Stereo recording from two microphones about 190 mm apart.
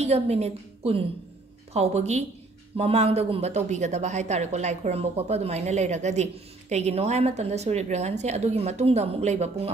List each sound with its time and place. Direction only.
0.0 s speech: 35° right (ahead or behind)